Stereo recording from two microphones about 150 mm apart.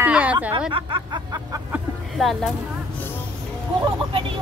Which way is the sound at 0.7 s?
35° right (ahead or behind).